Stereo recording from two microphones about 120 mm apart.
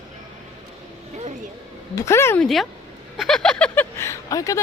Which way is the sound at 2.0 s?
20° left (ahead or behind).